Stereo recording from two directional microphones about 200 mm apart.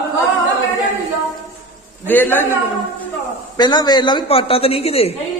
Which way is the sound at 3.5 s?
20° left (ahead or behind).